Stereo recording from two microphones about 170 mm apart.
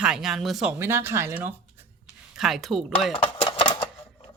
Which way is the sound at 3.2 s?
30° left (ahead or behind).